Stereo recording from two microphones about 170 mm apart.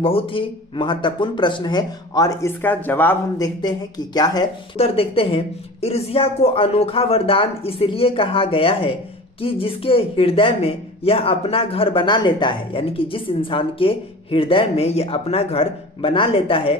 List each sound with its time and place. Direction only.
0.0 s speech: 30° left (ahead or behind)
4.7 s speech: 35° left (ahead or behind)